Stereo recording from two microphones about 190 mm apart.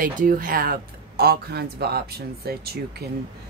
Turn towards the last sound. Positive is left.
turn(degrees=-55)  # may be behind; listen again after turning